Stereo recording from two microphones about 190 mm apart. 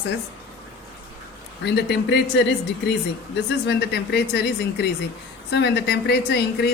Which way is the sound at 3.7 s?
65° left (ahead or behind).